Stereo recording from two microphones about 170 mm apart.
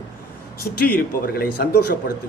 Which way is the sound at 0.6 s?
65° left (ahead or behind).